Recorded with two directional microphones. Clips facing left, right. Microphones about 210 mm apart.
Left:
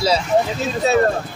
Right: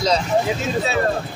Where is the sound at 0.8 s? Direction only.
40° left (ahead or behind).